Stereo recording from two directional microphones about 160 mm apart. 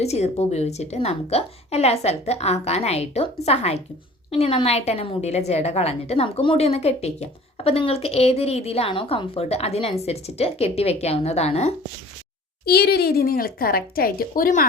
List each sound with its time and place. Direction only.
0.0 s a woman's voice: 40° left (ahead or behind)
12.6 s speech: 85° left; by 14.7 s 60° left (ahead or behind)